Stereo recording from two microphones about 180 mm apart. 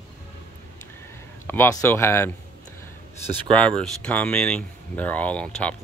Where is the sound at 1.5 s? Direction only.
10° left (ahead or behind).